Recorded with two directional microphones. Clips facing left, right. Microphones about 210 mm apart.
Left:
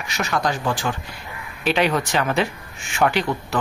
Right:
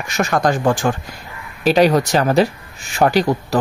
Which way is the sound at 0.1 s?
50° right (ahead or behind).